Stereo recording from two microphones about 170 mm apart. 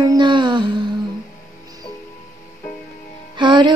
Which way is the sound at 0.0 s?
25° right (ahead or behind).